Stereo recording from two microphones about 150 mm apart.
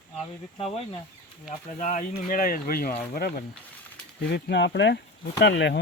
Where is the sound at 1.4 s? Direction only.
60° left (ahead or behind); by 2.9 s 75° left (ahead or behind).